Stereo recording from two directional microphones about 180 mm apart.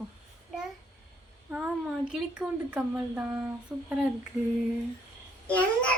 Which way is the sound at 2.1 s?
5° right (ahead or behind).